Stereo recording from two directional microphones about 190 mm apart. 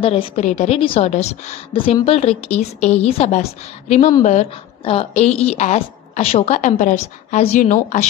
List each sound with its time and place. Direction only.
0.0 s a woman's voice: 30° left (ahead or behind)